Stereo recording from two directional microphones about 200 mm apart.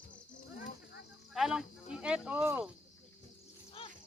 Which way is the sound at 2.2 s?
10° right (ahead or behind).